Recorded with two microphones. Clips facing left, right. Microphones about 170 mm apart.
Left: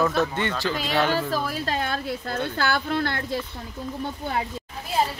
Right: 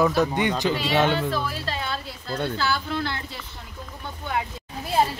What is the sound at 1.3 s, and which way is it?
A woman's voice, 45° left (ahead or behind).